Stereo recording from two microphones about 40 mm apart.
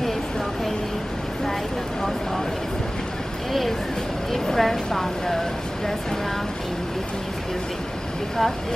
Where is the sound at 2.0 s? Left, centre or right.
Centre.